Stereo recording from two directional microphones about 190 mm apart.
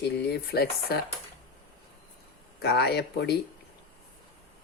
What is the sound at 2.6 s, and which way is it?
Speech, 55° left (ahead or behind).